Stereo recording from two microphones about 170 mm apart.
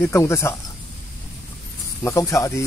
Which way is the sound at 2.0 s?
15° left (ahead or behind).